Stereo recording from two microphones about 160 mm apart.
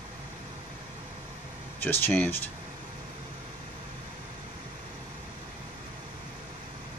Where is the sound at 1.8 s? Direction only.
10° left (ahead or behind).